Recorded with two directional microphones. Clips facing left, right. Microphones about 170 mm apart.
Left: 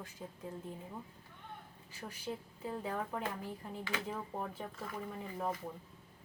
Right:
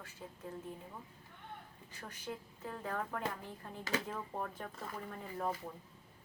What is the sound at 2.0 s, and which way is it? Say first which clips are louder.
A woman's voice: left 3 dB; 10° left (ahead or behind).